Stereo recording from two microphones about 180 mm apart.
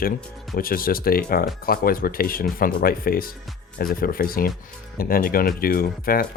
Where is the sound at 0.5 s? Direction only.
55° left (ahead or behind).